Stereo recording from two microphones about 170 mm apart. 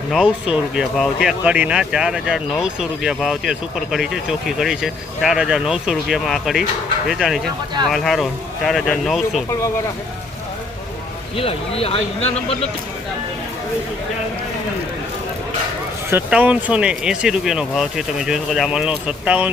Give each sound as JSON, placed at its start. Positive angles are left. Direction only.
{"t": 0.5, "sound": "speech", "side_deg": 0}
{"t": 11.3, "sound": "speech", "side_deg": 35}
{"t": 16.0, "sound": "speech", "side_deg": -10}